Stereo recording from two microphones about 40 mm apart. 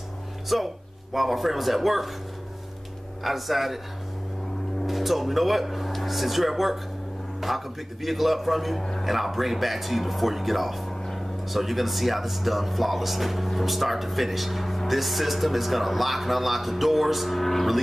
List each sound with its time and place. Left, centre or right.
0.5 s speech: centre
3.3 s speech: centre
4.8 s speech: centre
10.9 s a sound: centre
11.4 s speech: centre